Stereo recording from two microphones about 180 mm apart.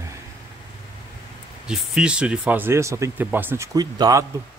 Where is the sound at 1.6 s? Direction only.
5° right (ahead or behind); by 4.2 s 20° right (ahead or behind).